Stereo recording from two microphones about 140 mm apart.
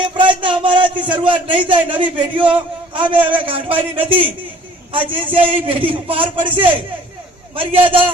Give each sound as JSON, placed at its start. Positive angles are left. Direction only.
{"t": 0.0, "sound": "a man's voice", "side_deg": -35}